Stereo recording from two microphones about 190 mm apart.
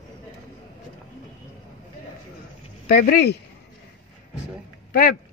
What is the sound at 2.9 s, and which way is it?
Speech, 55° left (ahead or behind).